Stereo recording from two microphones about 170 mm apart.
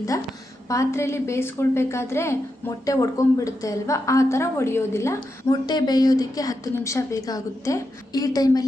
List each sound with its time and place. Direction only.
0.7 s a woman's voice: 15° left (ahead or behind)